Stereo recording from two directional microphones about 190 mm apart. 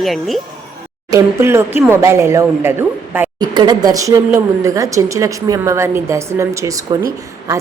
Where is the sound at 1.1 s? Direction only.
15° right (ahead or behind).